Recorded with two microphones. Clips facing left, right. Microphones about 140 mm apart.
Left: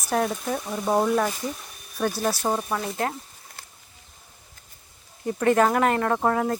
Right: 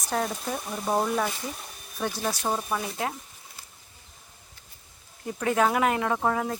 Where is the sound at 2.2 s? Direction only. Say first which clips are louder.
Left 2 dB; 10° left (ahead or behind).